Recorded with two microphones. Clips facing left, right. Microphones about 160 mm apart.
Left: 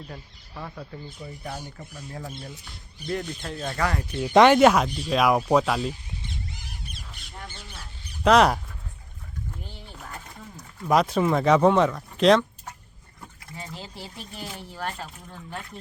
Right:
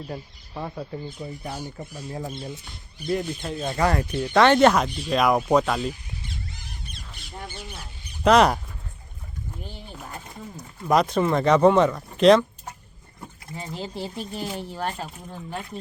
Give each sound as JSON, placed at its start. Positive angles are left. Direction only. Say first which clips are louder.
{"t": 0.1, "sound": "speech", "louder": "right 6 dB", "side_deg": -25}
{"t": 4.2, "sound": "speech", "louder": "left 1 dB", "side_deg": 10}
{"t": 6.5, "sound": "squawk", "louder": "even", "side_deg": 5}
{"t": 7.4, "sound": "a sound", "louder": "right 5 dB", "side_deg": -15}
{"t": 8.2, "sound": "speech", "louder": "right 1 dB", "side_deg": 0}
{"t": 9.6, "sound": "speech", "louder": "right 3 dB", "side_deg": -15}
{"t": 10.8, "sound": "speech", "louder": "right 1 dB", "side_deg": 5}
{"t": 13.5, "sound": "speech", "louder": "right 6 dB", "side_deg": -25}